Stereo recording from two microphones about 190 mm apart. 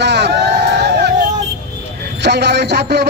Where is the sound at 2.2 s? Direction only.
65° right (ahead or behind).